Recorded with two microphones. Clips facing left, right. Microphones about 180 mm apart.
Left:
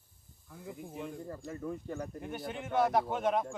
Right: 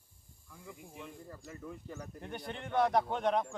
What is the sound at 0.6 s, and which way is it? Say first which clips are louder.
Speech: left 7 dB; 45° left (ahead or behind).